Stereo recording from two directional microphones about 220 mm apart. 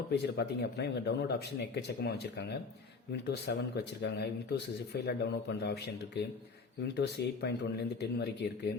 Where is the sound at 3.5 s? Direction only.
45° left (ahead or behind).